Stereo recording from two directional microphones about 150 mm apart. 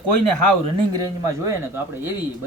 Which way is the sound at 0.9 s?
20° right (ahead or behind).